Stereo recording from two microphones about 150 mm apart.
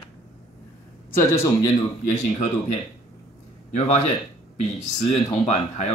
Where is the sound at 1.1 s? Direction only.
15° left (ahead or behind).